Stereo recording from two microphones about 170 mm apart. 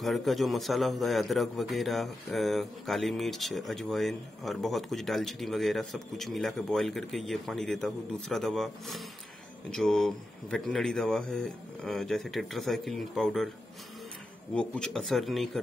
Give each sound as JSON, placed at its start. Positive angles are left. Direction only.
{"t": 0.0, "sound": "a man's voice", "side_deg": 0}
{"t": 14.5, "sound": "a man's voice", "side_deg": 5}